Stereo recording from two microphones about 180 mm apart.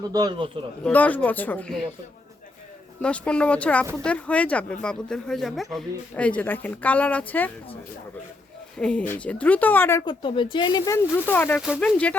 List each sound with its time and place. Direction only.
0.0 s a man's voice: 20° right (ahead or behind)
0.9 s speech: 10° left (ahead or behind)
3.0 s speech: 5° left (ahead or behind)
8.8 s speech: 5° left (ahead or behind)
10.1 s speech: 25° left (ahead or behind); by 12.1 s 5° left (ahead or behind)